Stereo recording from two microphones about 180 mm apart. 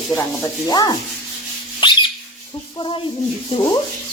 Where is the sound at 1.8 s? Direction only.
25° left (ahead or behind).